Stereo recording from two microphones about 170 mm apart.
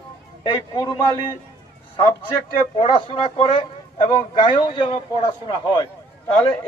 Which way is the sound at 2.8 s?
30° left (ahead or behind).